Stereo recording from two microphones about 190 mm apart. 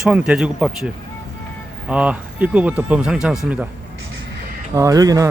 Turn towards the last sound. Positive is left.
turn(degrees=-20)  # may be behind; listen again after turning